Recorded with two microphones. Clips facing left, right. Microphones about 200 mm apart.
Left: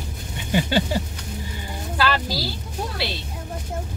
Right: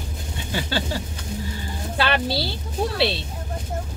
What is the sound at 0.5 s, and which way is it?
Speech, 15° left (ahead or behind).